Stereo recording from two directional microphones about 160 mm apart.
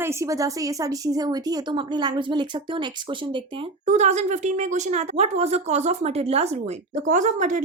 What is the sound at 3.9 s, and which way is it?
Speech, 50° right (ahead or behind).